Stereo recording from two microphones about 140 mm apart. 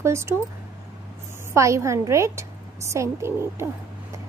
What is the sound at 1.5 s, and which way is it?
Speech, 20° right (ahead or behind).